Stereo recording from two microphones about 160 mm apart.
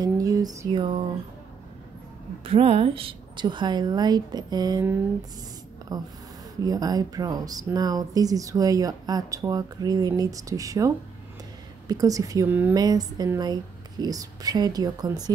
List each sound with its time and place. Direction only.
0.0 s a sound: 20° right (ahead or behind)
0.7 s speech: 30° right (ahead or behind)
2.4 s speech: 35° right (ahead or behind)
5.9 s speech: 25° right (ahead or behind)
11.9 s speech: 20° right (ahead or behind)
12.7 s speech: 25° right (ahead or behind)